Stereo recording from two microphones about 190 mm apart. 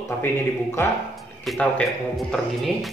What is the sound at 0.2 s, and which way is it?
A man's voice, 10° left (ahead or behind).